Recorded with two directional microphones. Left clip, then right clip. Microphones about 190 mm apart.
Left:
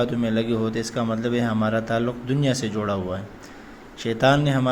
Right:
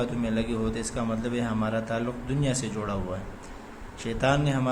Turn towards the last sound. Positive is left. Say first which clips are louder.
# left 6 dB
turn(degrees=25)  # may be behind; listen again after turning